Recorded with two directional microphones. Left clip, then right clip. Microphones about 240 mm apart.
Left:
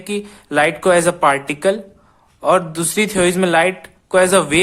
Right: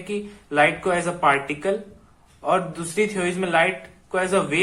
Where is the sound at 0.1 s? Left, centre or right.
Left.